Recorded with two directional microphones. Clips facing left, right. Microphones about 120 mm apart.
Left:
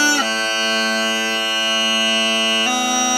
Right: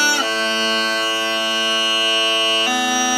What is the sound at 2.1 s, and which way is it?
Music, 35° left (ahead or behind).